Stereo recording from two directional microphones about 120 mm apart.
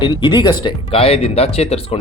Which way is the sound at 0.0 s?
40° left (ahead or behind).